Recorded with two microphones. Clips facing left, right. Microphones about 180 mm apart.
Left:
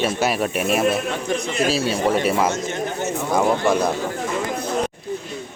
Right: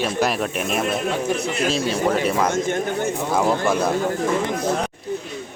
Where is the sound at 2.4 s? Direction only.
50° right (ahead or behind).